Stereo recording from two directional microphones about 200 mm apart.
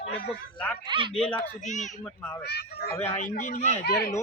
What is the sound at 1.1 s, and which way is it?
Speech, 5° left (ahead or behind).